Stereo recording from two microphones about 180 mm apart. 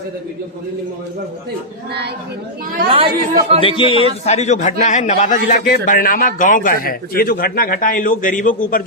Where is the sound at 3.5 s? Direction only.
30° left (ahead or behind).